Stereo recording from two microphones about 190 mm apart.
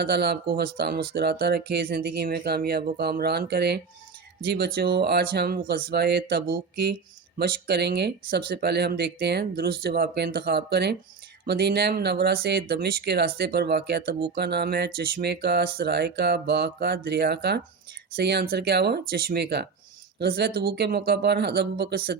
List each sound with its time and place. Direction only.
0.0 s speech: 60° right (ahead or behind)